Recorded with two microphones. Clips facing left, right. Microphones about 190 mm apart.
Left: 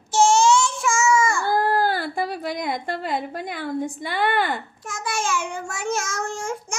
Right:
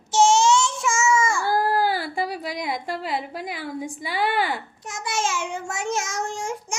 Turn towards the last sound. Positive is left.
turn(degrees=-20)  # may be behind; listen again after turning